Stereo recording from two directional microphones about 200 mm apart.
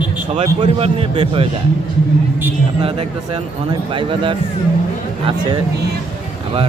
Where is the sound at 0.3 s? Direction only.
30° right (ahead or behind).